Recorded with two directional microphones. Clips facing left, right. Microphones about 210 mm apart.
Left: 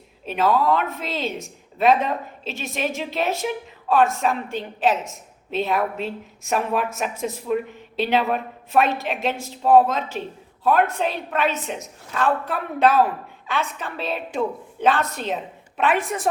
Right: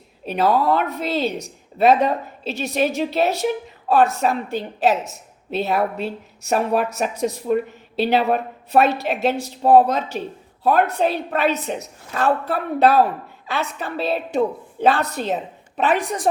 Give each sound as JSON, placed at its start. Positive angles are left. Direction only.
{"t": 0.3, "sound": "a woman's voice", "side_deg": -35}